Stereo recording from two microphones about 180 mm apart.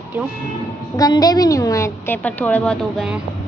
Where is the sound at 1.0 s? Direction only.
20° left (ahead or behind); by 3.2 s centre (ahead or behind).